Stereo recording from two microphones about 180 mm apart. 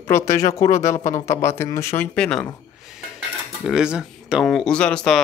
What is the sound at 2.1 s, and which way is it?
Speech, 5° left (ahead or behind).